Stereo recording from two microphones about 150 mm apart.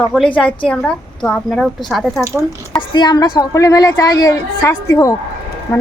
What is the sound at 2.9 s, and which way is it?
A woman's voice, 25° left (ahead or behind).